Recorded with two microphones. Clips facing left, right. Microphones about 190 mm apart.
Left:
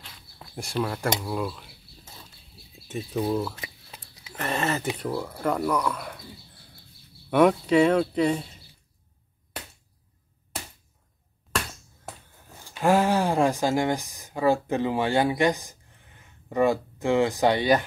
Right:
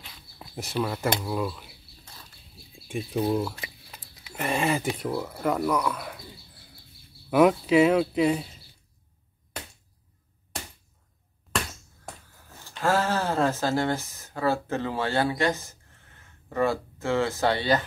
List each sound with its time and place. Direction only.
0.0 s a sound: 5° right (ahead or behind)
2.7 s speech: 10° right (ahead or behind)
7.2 s speech: 5° right (ahead or behind)
12.6 s speech: 15° left (ahead or behind)